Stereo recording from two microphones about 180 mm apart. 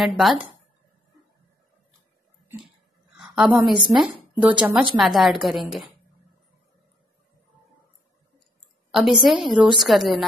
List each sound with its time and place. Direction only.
0.2 s a woman's voice: centre (ahead or behind)
3.2 s a sound: 5° right (ahead or behind)
3.5 s a woman's voice: 5° right (ahead or behind)
8.9 s a woman's voice: centre (ahead or behind)